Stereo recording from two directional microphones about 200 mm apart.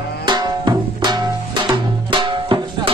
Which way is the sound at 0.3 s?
20° right (ahead or behind).